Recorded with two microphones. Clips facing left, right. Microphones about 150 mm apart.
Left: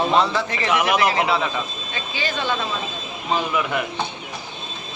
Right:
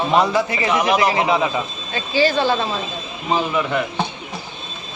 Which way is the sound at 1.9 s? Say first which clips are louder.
Right 10 dB; 35° right (ahead or behind).